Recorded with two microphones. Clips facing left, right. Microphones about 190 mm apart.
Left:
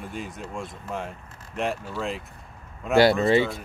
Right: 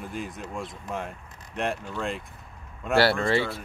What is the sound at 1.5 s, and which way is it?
Speech, centre (ahead or behind).